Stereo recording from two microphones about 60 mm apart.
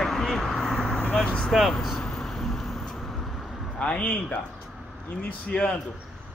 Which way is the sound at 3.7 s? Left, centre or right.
Centre.